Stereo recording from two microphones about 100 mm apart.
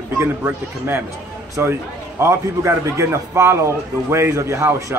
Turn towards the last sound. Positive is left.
turn(degrees=-30)  # may be behind; listen again after turning